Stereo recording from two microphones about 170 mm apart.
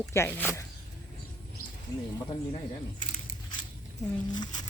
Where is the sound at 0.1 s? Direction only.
15° left (ahead or behind).